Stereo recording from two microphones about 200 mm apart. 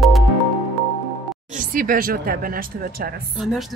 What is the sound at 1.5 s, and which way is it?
Speech, 45° right (ahead or behind).